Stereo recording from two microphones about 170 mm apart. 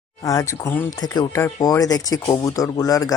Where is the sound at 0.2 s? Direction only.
20° left (ahead or behind).